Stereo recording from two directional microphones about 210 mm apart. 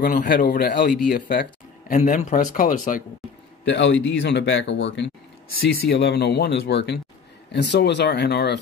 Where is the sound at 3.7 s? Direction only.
60° left (ahead or behind).